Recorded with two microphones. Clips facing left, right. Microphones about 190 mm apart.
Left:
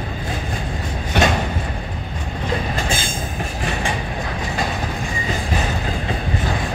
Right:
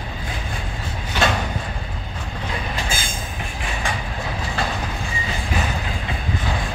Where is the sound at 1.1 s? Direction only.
65° left (ahead or behind).